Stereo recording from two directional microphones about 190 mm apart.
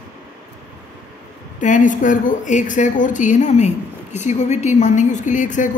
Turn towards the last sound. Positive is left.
turn(degrees=40)  # may be behind; listen again after turning